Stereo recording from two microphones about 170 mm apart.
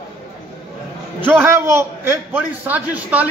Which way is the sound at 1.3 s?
15° right (ahead or behind).